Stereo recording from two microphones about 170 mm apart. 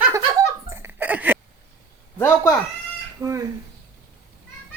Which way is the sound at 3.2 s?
20° right (ahead or behind).